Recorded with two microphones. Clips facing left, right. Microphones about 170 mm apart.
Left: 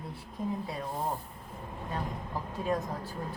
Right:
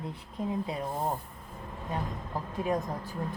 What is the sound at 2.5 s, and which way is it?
Speech, 15° right (ahead or behind).